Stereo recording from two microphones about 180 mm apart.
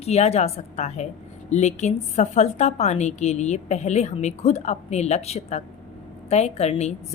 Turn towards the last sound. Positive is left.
turn(degrees=35)  # may be behind; listen again after turning